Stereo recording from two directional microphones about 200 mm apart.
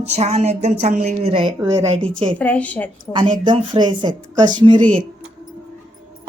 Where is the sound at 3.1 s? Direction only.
25° right (ahead or behind).